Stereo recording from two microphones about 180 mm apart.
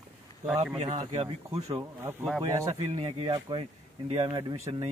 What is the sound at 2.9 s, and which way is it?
Speech, 30° right (ahead or behind).